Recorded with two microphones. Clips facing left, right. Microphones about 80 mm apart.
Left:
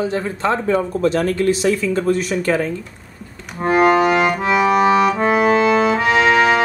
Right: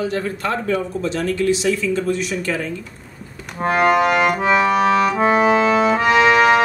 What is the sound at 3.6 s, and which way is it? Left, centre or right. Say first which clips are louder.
Accordion: left 2 dB; centre.